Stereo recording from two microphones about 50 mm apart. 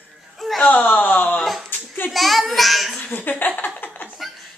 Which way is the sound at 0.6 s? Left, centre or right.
Left.